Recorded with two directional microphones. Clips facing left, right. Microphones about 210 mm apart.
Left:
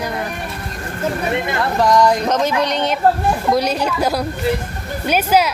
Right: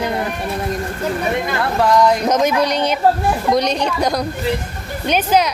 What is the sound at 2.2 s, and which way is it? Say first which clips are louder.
Speech: right 2 dB; 15° right (ahead or behind).